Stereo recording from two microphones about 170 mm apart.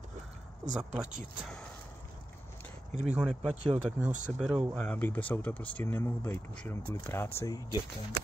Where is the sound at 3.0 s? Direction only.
5° right (ahead or behind).